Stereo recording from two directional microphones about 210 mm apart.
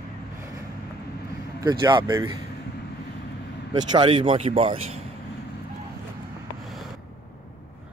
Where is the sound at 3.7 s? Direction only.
20° right (ahead or behind).